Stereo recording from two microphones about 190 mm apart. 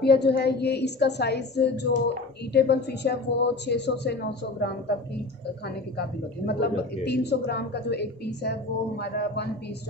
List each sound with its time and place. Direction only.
0.0 s a woman's voice: 60° left (ahead or behind)
5.9 s a woman's voice: 60° left (ahead or behind)